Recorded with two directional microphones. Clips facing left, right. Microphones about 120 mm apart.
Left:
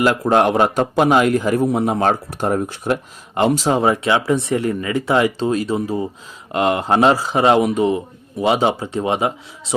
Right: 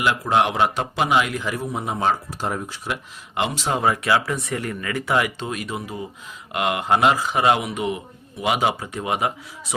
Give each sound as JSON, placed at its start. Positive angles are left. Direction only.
{"t": 0.0, "sound": "a man's voice", "side_deg": 45}
{"t": 1.6, "sound": "speech", "side_deg": 60}
{"t": 2.9, "sound": "speech", "side_deg": 40}
{"t": 3.7, "sound": "speech", "side_deg": 25}